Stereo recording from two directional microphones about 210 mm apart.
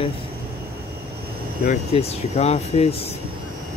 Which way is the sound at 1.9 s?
30° left (ahead or behind).